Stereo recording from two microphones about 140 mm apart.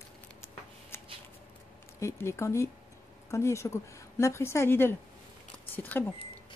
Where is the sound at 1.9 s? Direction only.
20° left (ahead or behind).